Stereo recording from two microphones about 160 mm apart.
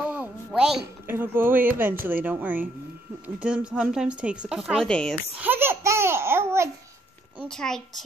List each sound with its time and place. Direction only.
0.1 s a sound: 5° right (ahead or behind)
1.0 s speech: 15° right (ahead or behind); by 5.1 s 5° left (ahead or behind)
5.4 s babbling: 15° right (ahead or behind)
7.4 s speech: 5° left (ahead or behind)